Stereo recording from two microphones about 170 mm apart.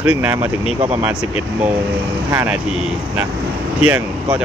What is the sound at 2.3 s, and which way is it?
Speech, 10° right (ahead or behind).